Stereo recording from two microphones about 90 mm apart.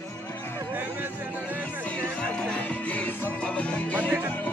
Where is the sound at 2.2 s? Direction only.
10° left (ahead or behind).